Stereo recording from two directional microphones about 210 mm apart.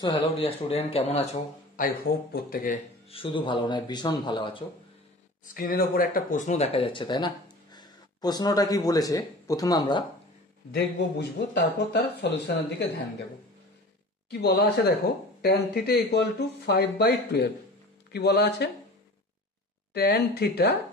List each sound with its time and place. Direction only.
0.0 s speech: 25° left (ahead or behind)
1.9 s speech: 45° left (ahead or behind)
3.1 s speech: 25° left (ahead or behind)
5.4 s speech: 40° left (ahead or behind); by 10.0 s 20° left (ahead or behind)
10.7 s speech: 50° left (ahead or behind)
14.3 s speech: 50° left (ahead or behind)
19.9 s speech: 50° left (ahead or behind)